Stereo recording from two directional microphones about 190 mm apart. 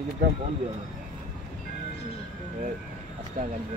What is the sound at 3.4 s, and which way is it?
Speech, 45° right (ahead or behind).